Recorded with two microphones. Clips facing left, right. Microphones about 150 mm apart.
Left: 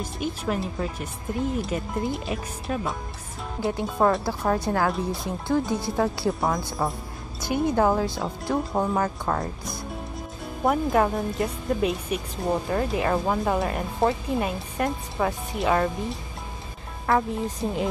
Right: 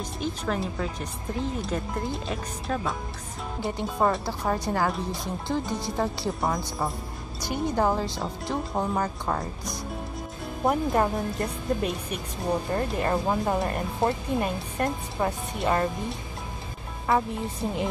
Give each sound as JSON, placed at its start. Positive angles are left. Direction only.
{"t": 0.0, "sound": "a woman's voice", "side_deg": 5}